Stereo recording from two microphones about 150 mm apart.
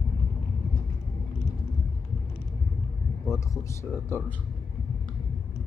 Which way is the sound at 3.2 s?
20° left (ahead or behind).